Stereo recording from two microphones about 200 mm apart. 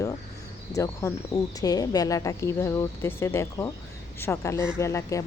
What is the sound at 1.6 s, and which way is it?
Speech, 20° left (ahead or behind).